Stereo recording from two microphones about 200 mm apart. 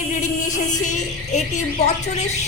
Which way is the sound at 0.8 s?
35° left (ahead or behind).